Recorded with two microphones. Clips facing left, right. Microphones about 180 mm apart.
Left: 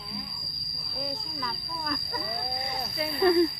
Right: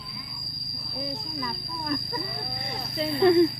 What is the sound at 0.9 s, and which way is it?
Speech, 20° right (ahead or behind).